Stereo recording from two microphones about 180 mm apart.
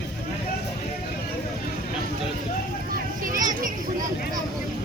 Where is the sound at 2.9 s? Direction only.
50° right (ahead or behind).